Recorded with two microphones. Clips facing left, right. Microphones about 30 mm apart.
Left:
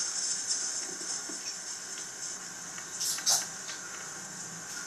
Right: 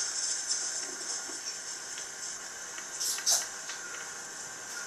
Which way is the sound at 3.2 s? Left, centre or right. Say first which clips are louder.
Left 1 dB; centre.